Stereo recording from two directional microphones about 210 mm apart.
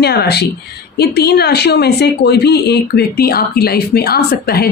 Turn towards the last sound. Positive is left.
turn(degrees=45)  # may be behind; listen again after turning